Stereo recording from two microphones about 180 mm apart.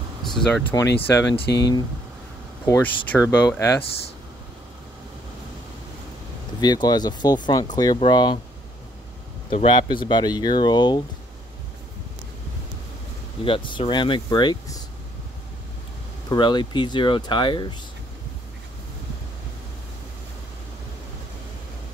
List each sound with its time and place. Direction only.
0.2 s speech: centre (ahead or behind)
1.4 s speech: 70° left (ahead or behind)
2.6 s speech: 15° left (ahead or behind)
6.6 s speech: 20° left (ahead or behind)
9.5 s speech: 25° left (ahead or behind)
13.4 s speech: 30° left (ahead or behind)
16.3 s speech: 25° left (ahead or behind)